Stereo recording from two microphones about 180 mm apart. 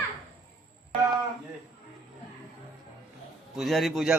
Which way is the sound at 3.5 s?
Centre (ahead or behind).